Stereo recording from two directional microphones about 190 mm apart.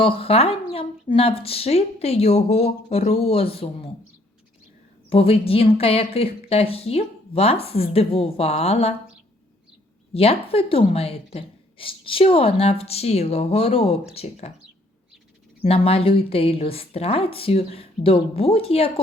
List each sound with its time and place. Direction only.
0.0 s a woman's voice: 30° left (ahead or behind)
5.0 s a woman's voice: 30° left (ahead or behind)
10.2 s a woman's voice: 30° left (ahead or behind)
15.6 s a woman's voice: 30° left (ahead or behind)